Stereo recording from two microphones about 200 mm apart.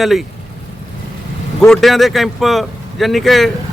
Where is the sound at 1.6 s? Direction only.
Centre (ahead or behind).